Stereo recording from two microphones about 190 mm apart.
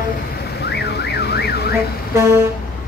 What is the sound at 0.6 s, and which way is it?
Car alarm, 60° left (ahead or behind).